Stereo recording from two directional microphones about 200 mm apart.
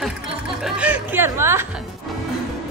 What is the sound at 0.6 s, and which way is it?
Music, 5° right (ahead or behind).